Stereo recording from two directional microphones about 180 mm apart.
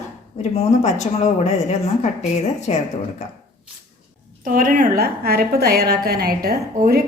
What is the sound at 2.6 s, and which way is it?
Speech, 40° left (ahead or behind).